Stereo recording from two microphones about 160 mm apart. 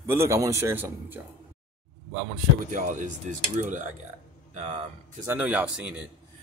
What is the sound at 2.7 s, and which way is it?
Speech, 55° right (ahead or behind).